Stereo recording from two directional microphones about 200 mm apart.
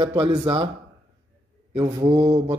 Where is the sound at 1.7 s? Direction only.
25° right (ahead or behind).